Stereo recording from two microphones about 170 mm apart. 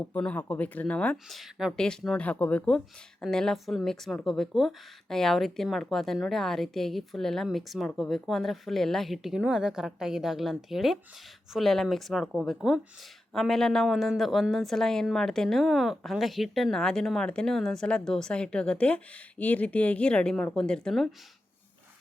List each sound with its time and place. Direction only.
0.1 s speech: 10° left (ahead or behind)